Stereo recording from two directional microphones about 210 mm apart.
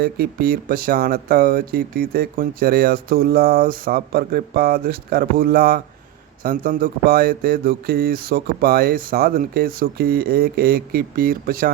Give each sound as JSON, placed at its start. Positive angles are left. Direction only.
{"t": 0.0, "sound": "speech", "side_deg": -45}